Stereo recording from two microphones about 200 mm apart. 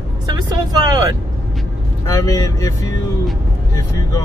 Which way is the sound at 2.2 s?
15° left (ahead or behind).